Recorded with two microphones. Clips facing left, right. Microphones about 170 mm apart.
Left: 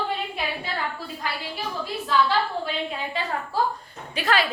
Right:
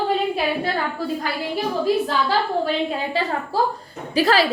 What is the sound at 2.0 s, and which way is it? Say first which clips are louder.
Speech: right 1 dB; 40° right (ahead or behind).